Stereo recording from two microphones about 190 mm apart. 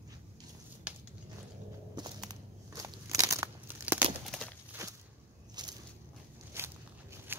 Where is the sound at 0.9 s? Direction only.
5° right (ahead or behind).